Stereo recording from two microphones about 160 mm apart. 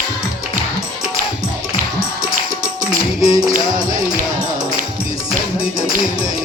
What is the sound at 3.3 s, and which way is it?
Music, 25° right (ahead or behind).